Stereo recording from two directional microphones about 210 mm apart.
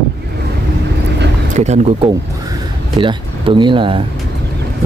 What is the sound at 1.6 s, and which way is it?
Speech, 25° right (ahead or behind).